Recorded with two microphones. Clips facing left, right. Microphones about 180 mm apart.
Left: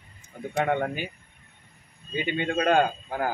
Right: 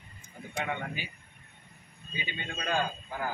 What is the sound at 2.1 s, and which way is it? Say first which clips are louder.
Speech: left 13 dB; 60° left (ahead or behind).